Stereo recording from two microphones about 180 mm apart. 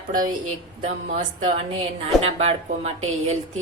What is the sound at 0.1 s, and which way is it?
A woman's voice, 50° right (ahead or behind).